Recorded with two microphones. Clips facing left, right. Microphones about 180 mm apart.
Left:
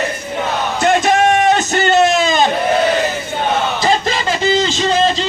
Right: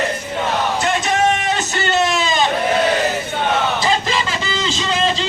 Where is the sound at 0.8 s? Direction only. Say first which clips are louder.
Left 7 dB; 50° left (ahead or behind).